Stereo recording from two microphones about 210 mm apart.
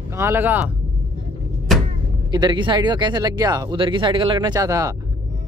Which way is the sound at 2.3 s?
20° right (ahead or behind).